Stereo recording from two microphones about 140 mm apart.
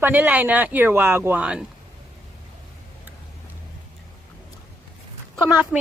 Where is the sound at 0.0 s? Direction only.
10° right (ahead or behind).